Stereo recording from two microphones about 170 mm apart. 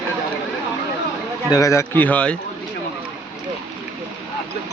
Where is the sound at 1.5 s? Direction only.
20° left (ahead or behind).